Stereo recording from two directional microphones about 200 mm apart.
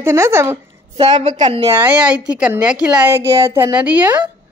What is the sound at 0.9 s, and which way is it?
Speech, 30° right (ahead or behind).